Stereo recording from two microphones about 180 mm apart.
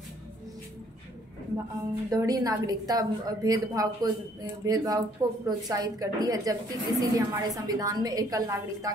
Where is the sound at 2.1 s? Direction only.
20° right (ahead or behind).